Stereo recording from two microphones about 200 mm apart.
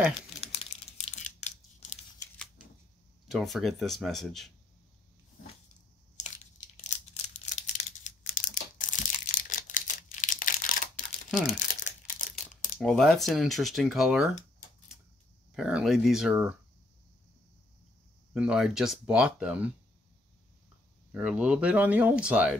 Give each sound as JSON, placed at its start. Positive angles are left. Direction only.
{"t": 0.4, "sound": "crumpling", "side_deg": 30}
{"t": 3.3, "sound": "speech", "side_deg": 0}
{"t": 7.4, "sound": "crumpling", "side_deg": 35}
{"t": 12.7, "sound": "speech", "side_deg": 0}
{"t": 15.5, "sound": "speech", "side_deg": 0}
{"t": 18.3, "sound": "speech", "side_deg": -5}
{"t": 21.1, "sound": "speech", "side_deg": -5}